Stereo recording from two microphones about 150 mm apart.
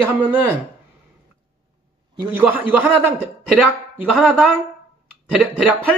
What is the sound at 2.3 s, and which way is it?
Speech, 10° right (ahead or behind).